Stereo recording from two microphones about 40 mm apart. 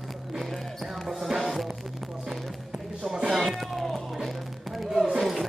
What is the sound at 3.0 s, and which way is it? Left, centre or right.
Music, centre.